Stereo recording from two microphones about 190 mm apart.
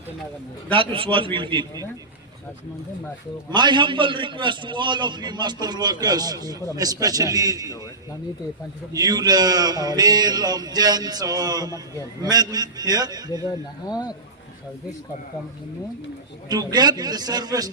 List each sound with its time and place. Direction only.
0.7 s a man's voice: 30° right (ahead or behind)
3.5 s a man's voice: 25° right (ahead or behind)
8.9 s a man's voice: 20° right (ahead or behind)
13.4 s speech: 20° left (ahead or behind)
16.5 s a man's voice: 20° right (ahead or behind)